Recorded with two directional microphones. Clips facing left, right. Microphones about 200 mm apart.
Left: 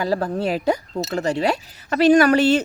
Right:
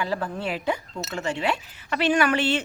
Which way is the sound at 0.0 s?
40° left (ahead or behind).